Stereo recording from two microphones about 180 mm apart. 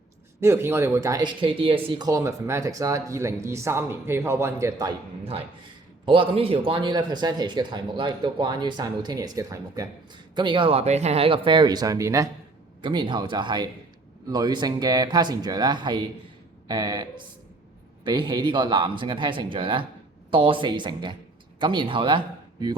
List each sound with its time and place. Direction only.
0.4 s speech: 15° right (ahead or behind)
5.2 s speech: 35° right (ahead or behind)